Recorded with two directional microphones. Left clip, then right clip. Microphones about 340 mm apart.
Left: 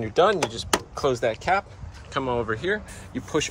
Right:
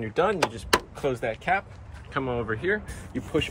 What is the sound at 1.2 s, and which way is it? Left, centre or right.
Speech, centre.